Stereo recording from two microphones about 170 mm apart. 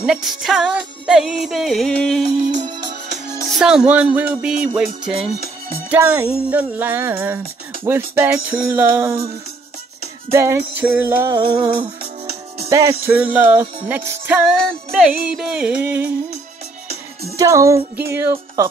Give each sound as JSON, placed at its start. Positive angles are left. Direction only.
{"t": 0.0, "sound": "music", "side_deg": -5}
{"t": 2.6, "sound": "music", "side_deg": -25}
{"t": 3.4, "sound": "music", "side_deg": -5}
{"t": 5.9, "sound": "speech", "side_deg": -15}
{"t": 10.3, "sound": "speech", "side_deg": -15}
{"t": 12.6, "sound": "speech", "side_deg": -15}
{"t": 14.7, "sound": "music", "side_deg": 0}
{"t": 17.4, "sound": "speech", "side_deg": -20}